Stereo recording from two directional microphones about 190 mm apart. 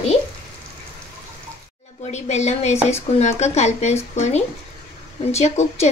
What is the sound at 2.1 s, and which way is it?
A woman's voice, 35° left (ahead or behind).